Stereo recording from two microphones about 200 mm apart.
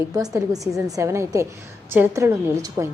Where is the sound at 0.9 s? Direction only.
15° right (ahead or behind).